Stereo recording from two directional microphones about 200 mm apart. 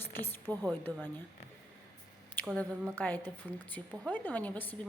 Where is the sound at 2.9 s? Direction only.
10° left (ahead or behind).